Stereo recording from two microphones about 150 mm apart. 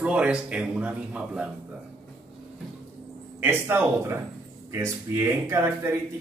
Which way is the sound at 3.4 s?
15° right (ahead or behind).